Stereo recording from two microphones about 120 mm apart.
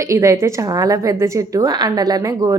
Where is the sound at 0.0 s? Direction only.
25° right (ahead or behind).